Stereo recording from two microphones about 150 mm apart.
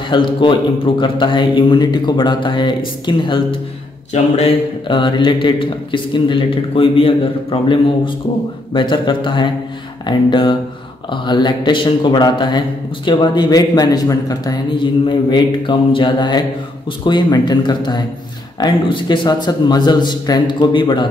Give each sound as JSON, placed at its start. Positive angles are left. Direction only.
{"t": 0.1, "sound": "a man's voice", "side_deg": 30}